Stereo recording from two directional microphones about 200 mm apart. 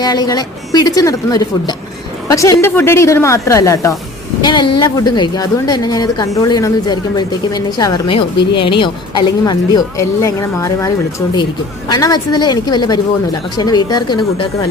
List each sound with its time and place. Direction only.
0.0 s a woman's voice: 20° left (ahead or behind)